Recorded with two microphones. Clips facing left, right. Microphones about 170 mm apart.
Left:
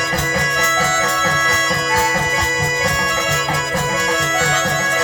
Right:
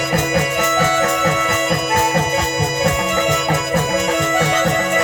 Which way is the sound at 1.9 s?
Centre (ahead or behind).